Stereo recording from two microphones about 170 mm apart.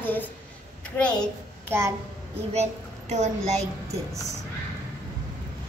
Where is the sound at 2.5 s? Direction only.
45° right (ahead or behind).